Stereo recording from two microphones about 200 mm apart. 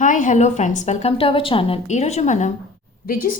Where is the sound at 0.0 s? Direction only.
40° left (ahead or behind).